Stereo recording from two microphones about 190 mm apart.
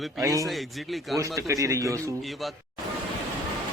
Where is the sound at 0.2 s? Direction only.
15° right (ahead or behind).